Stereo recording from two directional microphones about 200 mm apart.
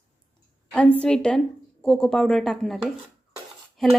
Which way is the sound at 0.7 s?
5° left (ahead or behind).